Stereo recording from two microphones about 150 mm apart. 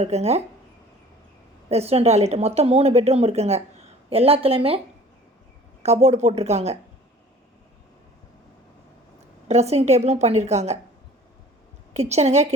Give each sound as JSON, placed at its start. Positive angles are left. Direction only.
{"t": 0.0, "sound": "speech", "side_deg": -45}
{"t": 1.7, "sound": "speech", "side_deg": -45}
{"t": 5.8, "sound": "speech", "side_deg": -45}
{"t": 9.5, "sound": "speech", "side_deg": -45}
{"t": 11.9, "sound": "speech", "side_deg": -45}